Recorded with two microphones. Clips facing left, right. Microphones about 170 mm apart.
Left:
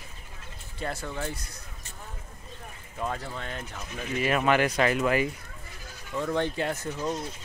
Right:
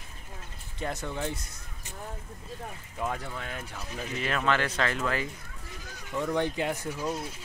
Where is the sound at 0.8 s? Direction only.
20° right (ahead or behind).